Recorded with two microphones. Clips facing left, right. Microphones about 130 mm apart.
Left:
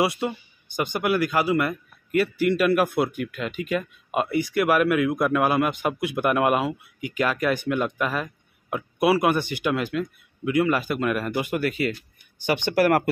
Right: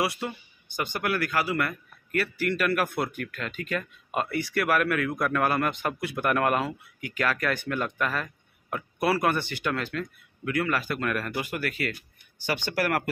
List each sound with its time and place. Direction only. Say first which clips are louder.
0.0 s speech: left 5 dB; 20° left (ahead or behind)